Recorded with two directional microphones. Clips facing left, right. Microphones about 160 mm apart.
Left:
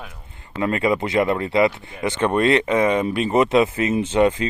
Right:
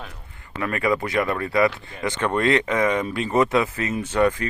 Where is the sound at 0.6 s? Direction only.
25° left (ahead or behind).